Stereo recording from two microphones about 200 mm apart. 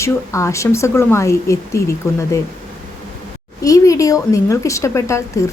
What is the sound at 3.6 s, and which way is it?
Speech, 15° left (ahead or behind).